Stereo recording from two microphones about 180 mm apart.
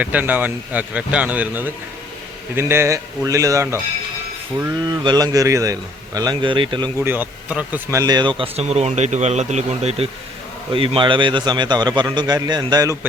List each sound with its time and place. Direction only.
0.0 s a man's voice: 10° right (ahead or behind); by 6.9 s 25° right (ahead or behind)
7.0 s a man's voice: 10° right (ahead or behind)